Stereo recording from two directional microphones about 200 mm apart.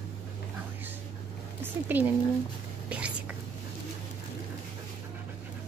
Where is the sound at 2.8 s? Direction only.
5° right (ahead or behind).